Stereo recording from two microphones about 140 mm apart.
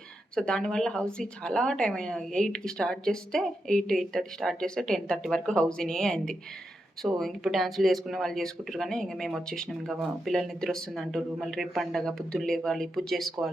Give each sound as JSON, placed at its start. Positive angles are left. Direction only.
{"t": 0.3, "sound": "speech", "side_deg": 5}